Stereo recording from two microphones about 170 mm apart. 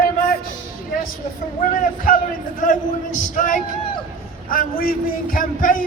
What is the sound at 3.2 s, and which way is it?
Speech, 45° left (ahead or behind).